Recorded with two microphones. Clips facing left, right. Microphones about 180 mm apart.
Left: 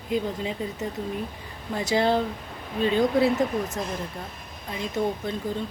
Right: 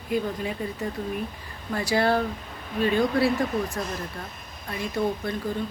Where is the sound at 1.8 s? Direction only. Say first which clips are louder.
Even; 20° left (ahead or behind).